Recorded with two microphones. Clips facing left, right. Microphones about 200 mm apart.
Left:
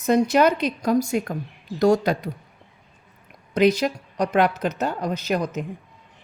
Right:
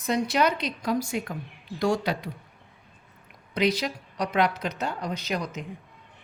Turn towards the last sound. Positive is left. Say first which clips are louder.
# left 6 dB
turn(degrees=50)  # may be behind; listen again after turning